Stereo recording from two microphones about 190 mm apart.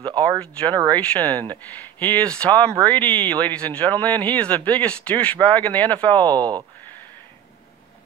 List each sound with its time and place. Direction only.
0.4 s speech: 5° left (ahead or behind)
6.2 s speech: 20° right (ahead or behind)